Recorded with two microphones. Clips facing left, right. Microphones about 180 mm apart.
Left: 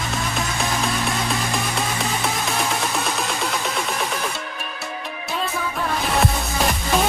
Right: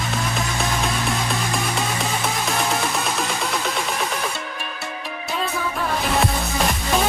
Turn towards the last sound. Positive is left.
turn(degrees=0)  # may be behind; listen again after turning